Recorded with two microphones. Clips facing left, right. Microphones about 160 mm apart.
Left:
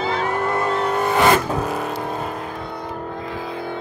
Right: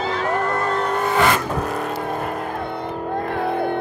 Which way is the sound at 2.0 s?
55° right (ahead or behind).